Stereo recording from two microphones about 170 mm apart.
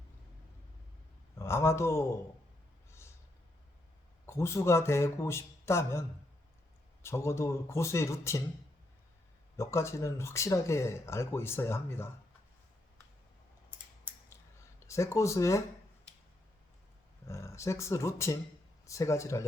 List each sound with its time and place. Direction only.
1.4 s speech: 15° left (ahead or behind)
4.3 s speech: 15° left (ahead or behind)
9.6 s speech: 15° left (ahead or behind)
14.8 s speech: 15° left (ahead or behind)
17.2 s speech: 15° left (ahead or behind)